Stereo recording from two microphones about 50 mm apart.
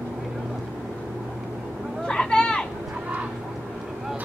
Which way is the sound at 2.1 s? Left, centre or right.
Centre.